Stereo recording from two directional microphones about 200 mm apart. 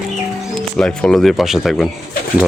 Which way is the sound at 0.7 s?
5° left (ahead or behind).